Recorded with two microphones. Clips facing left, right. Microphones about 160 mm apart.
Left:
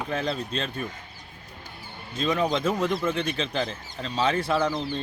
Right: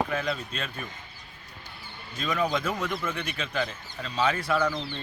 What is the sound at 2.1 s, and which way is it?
Speech, 30° left (ahead or behind).